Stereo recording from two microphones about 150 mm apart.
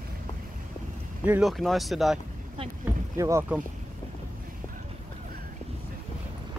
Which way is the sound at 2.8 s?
20° right (ahead or behind).